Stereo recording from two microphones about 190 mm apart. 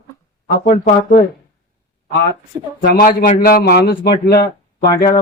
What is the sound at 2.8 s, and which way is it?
A man's voice, 50° left (ahead or behind).